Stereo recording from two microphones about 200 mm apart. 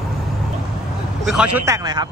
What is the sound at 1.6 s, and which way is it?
Speech, 20° right (ahead or behind).